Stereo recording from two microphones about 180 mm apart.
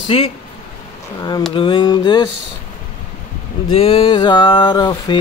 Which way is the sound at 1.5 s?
25° left (ahead or behind).